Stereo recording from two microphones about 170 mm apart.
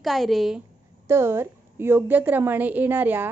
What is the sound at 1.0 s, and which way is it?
A woman's voice, 15° right (ahead or behind).